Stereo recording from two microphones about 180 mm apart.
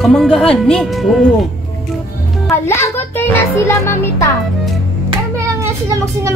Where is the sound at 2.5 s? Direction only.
15° left (ahead or behind).